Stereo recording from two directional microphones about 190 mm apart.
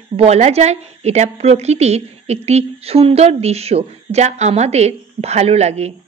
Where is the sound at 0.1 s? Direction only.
35° right (ahead or behind).